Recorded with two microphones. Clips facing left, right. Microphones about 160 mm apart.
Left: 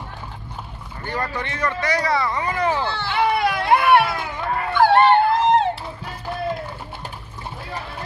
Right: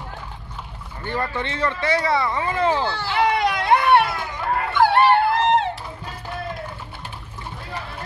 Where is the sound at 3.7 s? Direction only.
10° left (ahead or behind).